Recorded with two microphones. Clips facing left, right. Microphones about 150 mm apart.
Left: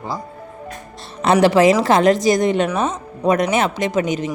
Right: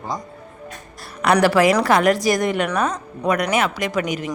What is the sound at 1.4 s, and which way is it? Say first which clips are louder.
Speech: left 4 dB; 20° left (ahead or behind).